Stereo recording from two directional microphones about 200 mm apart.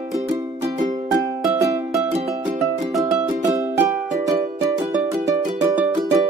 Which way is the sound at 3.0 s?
15° right (ahead or behind).